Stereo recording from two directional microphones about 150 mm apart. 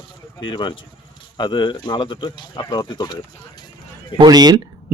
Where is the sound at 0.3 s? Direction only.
30° left (ahead or behind).